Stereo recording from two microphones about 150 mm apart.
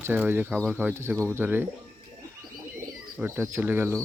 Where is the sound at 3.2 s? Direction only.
15° right (ahead or behind).